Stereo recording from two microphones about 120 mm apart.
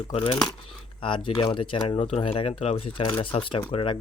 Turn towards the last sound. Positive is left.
turn(degrees=45)  # may be behind; listen again after turning